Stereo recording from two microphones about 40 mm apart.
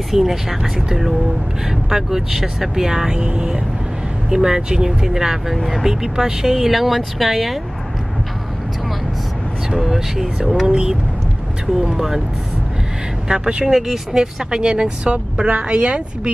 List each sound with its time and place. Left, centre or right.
0.1 s speech: centre
6.1 s speech: centre
9.8 s speech: centre
10.7 s a woman's voice: right
13.3 s a woman's voice: right